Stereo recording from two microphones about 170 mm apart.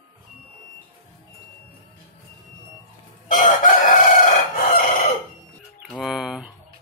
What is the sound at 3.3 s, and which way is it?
Chicken, 50° left (ahead or behind).